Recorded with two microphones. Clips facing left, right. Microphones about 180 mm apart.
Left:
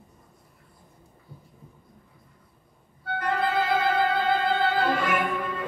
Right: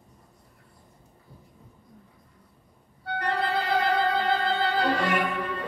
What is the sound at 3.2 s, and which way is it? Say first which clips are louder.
Music: left 2 dB; 35° right (ahead or behind).